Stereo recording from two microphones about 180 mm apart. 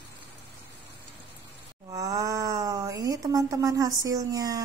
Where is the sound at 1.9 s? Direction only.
20° right (ahead or behind).